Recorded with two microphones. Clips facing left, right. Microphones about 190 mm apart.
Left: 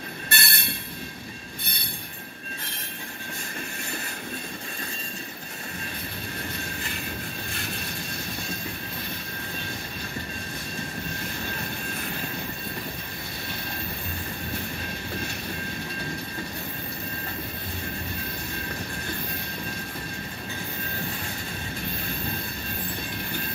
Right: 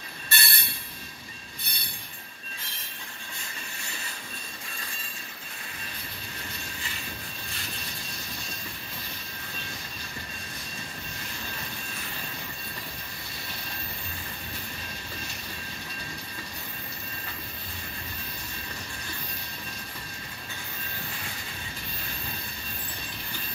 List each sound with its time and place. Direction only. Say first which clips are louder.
0.3 s train wheels squealing: left 2 dB; 60° left (ahead or behind)